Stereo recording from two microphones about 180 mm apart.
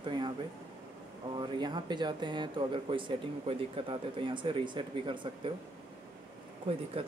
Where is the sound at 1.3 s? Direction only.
25° right (ahead or behind).